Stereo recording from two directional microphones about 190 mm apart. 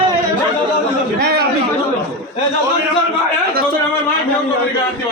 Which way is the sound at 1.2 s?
60° right (ahead or behind).